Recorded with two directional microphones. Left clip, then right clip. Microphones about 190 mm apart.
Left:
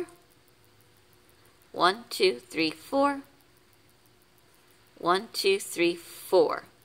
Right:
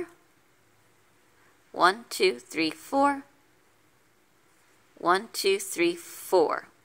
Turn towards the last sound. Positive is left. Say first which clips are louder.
# even
turn(degrees=-15)  # may be behind; listen again after turning